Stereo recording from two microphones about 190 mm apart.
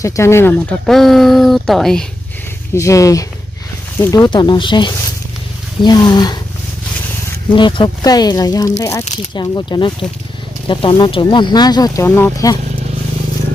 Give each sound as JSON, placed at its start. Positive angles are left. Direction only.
{"t": 0.0, "sound": "speech", "side_deg": 15}
{"t": 2.7, "sound": "speech", "side_deg": 15}
{"t": 7.5, "sound": "speech", "side_deg": 25}